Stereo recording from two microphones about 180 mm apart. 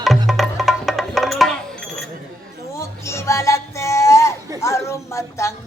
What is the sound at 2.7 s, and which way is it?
Music, 15° left (ahead or behind).